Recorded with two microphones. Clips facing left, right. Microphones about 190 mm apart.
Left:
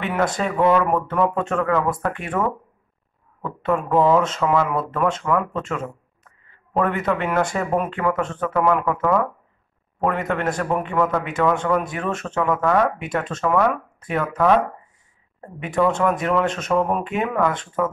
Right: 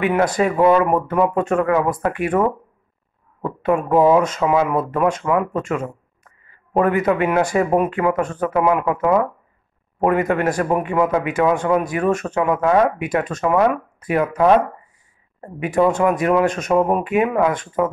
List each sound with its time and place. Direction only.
0.0 s speech: centre (ahead or behind)
3.4 s speech: 10° right (ahead or behind)
6.8 s speech: 5° right (ahead or behind)
8.5 s speech: 10° right (ahead or behind)
12.0 s speech: 15° right (ahead or behind)
16.1 s speech: 5° right (ahead or behind)